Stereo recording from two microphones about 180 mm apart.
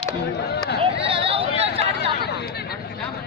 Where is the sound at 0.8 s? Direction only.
30° right (ahead or behind).